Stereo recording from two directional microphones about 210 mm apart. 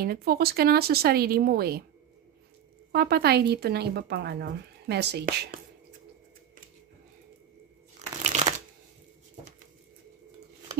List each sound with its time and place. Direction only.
0.0 s speech: 45° right (ahead or behind)
2.9 s speech: 50° right (ahead or behind)
8.2 s shuffling cards: 35° right (ahead or behind)